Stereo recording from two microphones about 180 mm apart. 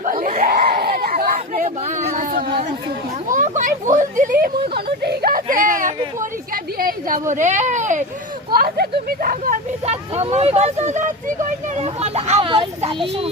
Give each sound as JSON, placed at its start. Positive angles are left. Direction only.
{"t": 0.0, "sound": "screaming", "side_deg": -50}
{"t": 0.4, "sound": "a sound", "side_deg": -55}
{"t": 3.2, "sound": "speech", "side_deg": -45}
{"t": 8.4, "sound": "speech", "side_deg": -55}